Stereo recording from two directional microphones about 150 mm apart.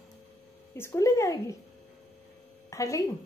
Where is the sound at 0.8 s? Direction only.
20° left (ahead or behind).